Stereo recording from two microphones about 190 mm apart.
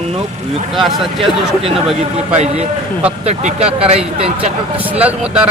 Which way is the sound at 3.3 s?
35° right (ahead or behind).